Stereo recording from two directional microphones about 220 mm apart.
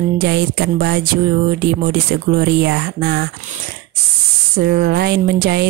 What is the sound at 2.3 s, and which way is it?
Speech, 50° right (ahead or behind).